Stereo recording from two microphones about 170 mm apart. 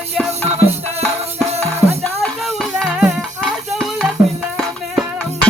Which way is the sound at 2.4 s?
Centre (ahead or behind).